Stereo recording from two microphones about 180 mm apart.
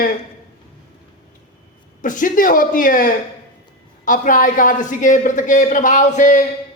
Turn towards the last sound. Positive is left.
turn(degrees=45)  # may be behind; listen again after turning